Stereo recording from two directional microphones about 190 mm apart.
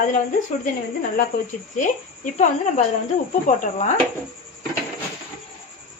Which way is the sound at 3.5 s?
45° left (ahead or behind).